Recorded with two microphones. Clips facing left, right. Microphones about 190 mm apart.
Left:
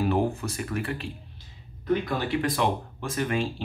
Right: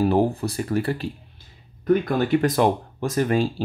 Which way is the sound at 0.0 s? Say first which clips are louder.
Right 5 dB; 35° right (ahead or behind).